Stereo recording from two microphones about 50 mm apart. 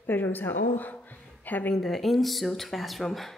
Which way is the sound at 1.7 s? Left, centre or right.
Centre.